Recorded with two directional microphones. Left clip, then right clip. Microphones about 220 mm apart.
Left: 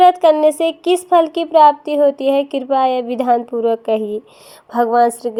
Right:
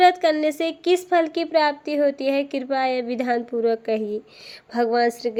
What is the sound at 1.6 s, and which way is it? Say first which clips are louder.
Speech: left 10 dB; 65° left (ahead or behind).